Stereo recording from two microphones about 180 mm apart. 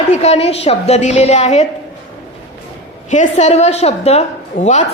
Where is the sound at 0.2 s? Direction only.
35° left (ahead or behind).